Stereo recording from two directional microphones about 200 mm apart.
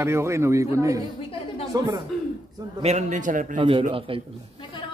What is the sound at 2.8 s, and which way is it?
Speech, 35° right (ahead or behind).